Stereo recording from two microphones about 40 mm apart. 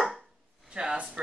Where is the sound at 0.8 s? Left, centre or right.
Right.